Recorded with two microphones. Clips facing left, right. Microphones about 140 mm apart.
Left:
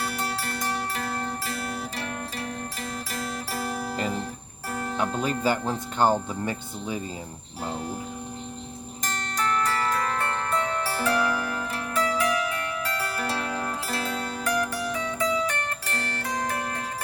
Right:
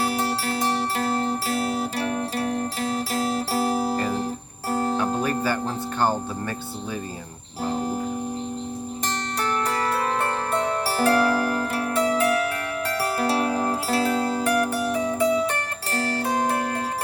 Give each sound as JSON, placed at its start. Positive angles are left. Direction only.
{"t": 0.3, "sound": "music", "side_deg": -30}
{"t": 5.4, "sound": "speech", "side_deg": 20}
{"t": 9.4, "sound": "music", "side_deg": -35}
{"t": 12.2, "sound": "zither", "side_deg": -55}
{"t": 13.0, "sound": "zither", "side_deg": -35}
{"t": 14.9, "sound": "music", "side_deg": -35}